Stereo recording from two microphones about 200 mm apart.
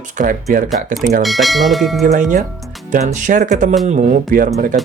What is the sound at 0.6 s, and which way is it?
Speech, centre (ahead or behind).